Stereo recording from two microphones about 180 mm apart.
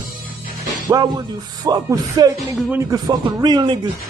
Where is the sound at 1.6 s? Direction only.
20° right (ahead or behind).